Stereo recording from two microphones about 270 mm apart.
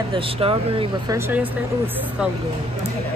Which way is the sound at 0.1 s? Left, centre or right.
Right.